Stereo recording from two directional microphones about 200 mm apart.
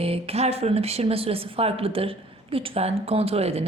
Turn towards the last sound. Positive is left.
turn(degrees=-30)  # may be behind; listen again after turning